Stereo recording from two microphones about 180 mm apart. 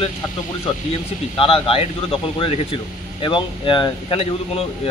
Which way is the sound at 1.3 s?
30° left (ahead or behind).